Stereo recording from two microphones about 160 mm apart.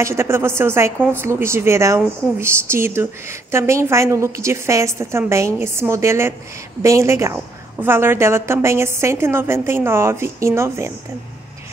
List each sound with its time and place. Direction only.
0.0 s a woman's voice: 15° right (ahead or behind)